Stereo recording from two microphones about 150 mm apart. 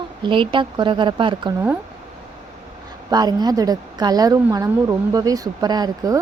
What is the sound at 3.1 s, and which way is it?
Speech, 25° right (ahead or behind).